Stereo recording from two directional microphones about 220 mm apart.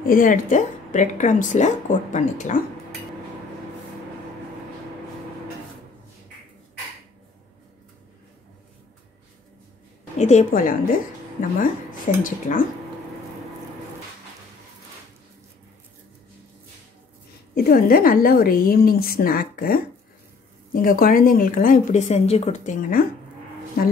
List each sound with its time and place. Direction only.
0.0 s a woman's voice: 40° left (ahead or behind)
10.1 s a woman's voice: 30° left (ahead or behind)
12.2 s a woman's voice: 35° left (ahead or behind)
17.6 s a woman's voice: 40° left (ahead or behind)